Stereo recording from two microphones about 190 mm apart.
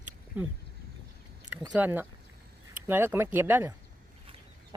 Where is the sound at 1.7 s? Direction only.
10° right (ahead or behind).